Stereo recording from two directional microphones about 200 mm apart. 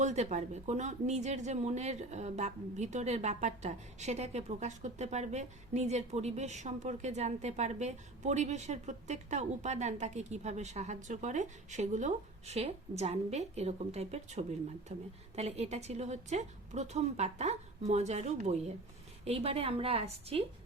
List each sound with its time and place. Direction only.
0.0 s a woman's voice: 35° right (ahead or behind)